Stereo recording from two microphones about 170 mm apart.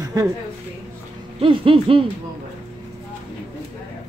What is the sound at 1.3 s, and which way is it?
Speech, 30° right (ahead or behind).